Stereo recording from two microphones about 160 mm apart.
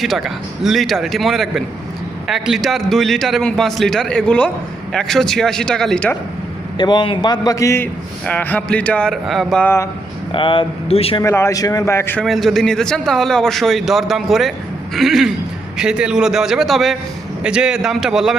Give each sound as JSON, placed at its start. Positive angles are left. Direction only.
{"t": 0.0, "sound": "a man's voice", "side_deg": 0}
{"t": 6.7, "sound": "a man's voice", "side_deg": 30}
{"t": 10.3, "sound": "speech", "side_deg": 30}
{"t": 11.2, "sound": "speech", "side_deg": 15}
{"t": 12.2, "sound": "a man's voice", "side_deg": 0}